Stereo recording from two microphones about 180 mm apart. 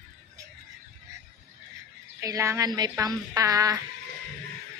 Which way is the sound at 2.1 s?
15° right (ahead or behind).